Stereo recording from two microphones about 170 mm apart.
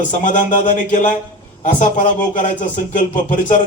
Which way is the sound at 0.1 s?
50° left (ahead or behind).